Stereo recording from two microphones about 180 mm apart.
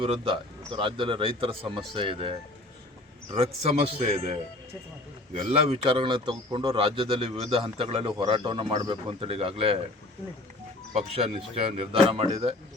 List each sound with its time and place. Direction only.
0.0 s a man's voice: 30° right (ahead or behind)
10.9 s speech: 35° right (ahead or behind)